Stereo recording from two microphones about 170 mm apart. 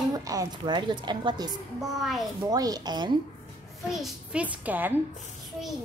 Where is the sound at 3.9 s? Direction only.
5° right (ahead or behind).